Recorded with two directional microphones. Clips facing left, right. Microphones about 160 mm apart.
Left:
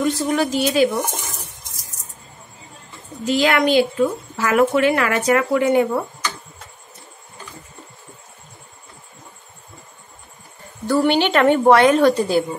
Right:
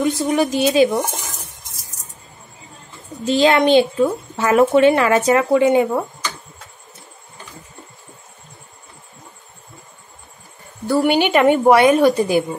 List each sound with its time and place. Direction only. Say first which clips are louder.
0.0 s a woman's voice: right 2 dB; 15° right (ahead or behind)
3.3 s speech: right 3 dB; 25° right (ahead or behind)
10.9 s a woman's voice: right 1 dB; 10° right (ahead or behind)